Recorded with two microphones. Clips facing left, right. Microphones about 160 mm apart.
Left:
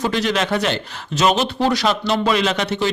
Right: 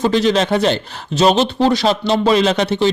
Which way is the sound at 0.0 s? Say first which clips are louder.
Right 5 dB; 30° right (ahead or behind).